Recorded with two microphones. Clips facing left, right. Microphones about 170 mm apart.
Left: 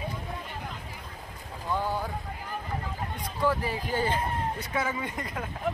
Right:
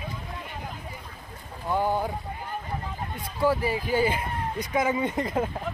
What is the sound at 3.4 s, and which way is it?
Speech, 10° right (ahead or behind).